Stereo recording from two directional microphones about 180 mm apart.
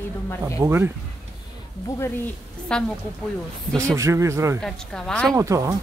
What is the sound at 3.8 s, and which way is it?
Speech, 15° right (ahead or behind).